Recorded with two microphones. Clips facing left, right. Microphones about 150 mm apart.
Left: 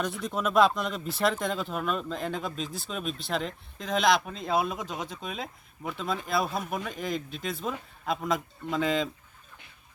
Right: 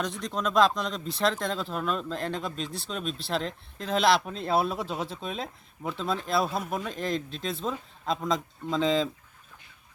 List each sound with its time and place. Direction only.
0.0 s speech: 5° left (ahead or behind)
4.5 s speech: 35° right (ahead or behind)
5.2 s speech: centre (ahead or behind)
8.8 s speech: 25° right (ahead or behind)